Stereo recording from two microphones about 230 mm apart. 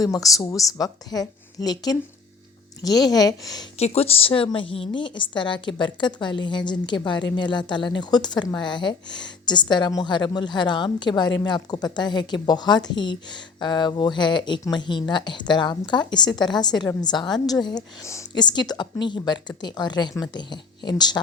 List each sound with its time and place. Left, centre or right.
0.0 s a woman's voice: centre
3.8 s speech: left